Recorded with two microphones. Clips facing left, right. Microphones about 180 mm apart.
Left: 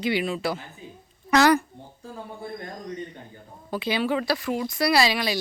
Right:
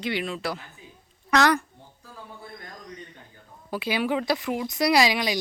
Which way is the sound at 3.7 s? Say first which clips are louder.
Left 1 dB; 10° right (ahead or behind).